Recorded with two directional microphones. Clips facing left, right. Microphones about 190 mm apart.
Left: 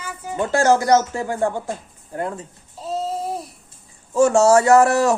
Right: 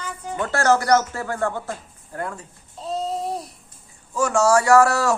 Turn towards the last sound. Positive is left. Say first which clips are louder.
# left 2 dB
turn(degrees=20)  # may be behind; listen again after turning